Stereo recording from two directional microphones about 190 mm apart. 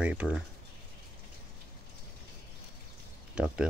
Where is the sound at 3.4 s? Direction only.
5° right (ahead or behind).